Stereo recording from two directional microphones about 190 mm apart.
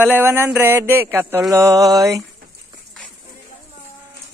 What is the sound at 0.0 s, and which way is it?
Speech, 10° right (ahead or behind).